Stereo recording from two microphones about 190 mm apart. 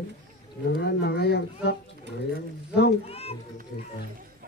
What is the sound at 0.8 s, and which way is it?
Speech, 60° left (ahead or behind).